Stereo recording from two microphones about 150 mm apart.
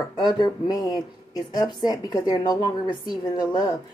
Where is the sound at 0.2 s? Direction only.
25° left (ahead or behind).